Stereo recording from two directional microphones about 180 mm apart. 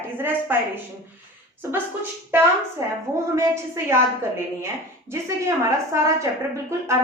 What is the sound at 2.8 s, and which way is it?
A woman's voice, 15° right (ahead or behind).